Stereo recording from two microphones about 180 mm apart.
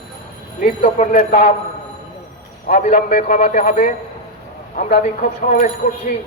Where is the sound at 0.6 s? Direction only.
45° left (ahead or behind).